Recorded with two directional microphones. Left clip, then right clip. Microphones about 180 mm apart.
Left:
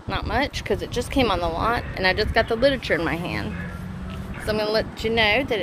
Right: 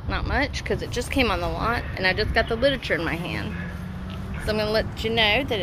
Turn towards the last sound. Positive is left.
turn(degrees=10)  # may be behind; listen again after turning